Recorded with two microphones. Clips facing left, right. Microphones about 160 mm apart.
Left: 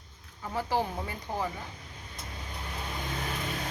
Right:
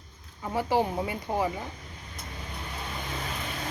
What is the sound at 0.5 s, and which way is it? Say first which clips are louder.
Speech: right 4 dB; 15° right (ahead or behind).